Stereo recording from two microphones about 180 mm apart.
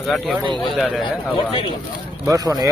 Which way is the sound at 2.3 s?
20° right (ahead or behind).